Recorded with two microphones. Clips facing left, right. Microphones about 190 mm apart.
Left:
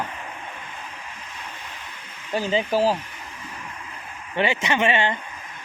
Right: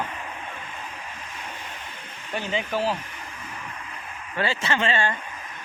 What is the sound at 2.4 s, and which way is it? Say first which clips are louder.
Speech: left 5 dB; 35° left (ahead or behind).